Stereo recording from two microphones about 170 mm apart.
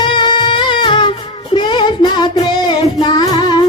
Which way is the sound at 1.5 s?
25° left (ahead or behind).